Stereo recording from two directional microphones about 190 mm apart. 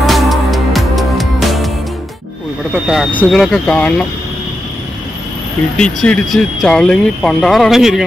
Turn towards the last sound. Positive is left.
turn(degrees=0)  # may be behind; listen again after turning